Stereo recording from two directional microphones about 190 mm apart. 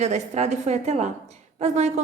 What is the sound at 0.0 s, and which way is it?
A woman's voice, 35° right (ahead or behind).